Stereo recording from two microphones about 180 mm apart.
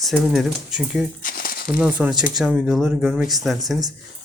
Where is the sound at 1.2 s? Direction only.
50° left (ahead or behind).